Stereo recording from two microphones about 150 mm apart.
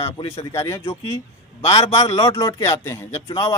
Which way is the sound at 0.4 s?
20° left (ahead or behind).